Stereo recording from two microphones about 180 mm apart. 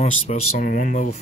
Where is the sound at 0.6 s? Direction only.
50° left (ahead or behind).